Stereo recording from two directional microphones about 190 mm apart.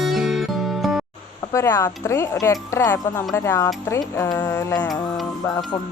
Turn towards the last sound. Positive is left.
turn(degrees=15)  # may be behind; listen again after turning